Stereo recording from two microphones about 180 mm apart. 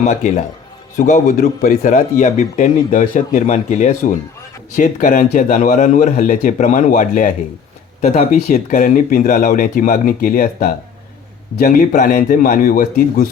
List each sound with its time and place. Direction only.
0.0 s a man's voice: 40° left (ahead or behind)